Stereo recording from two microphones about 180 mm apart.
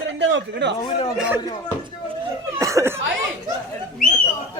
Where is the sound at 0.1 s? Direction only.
90° right.